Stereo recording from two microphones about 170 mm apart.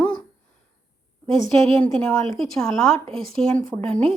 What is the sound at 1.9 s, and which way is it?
Speech, 5° left (ahead or behind).